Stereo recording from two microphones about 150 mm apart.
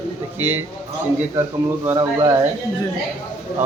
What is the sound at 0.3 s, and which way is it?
A man's voice, 15° right (ahead or behind).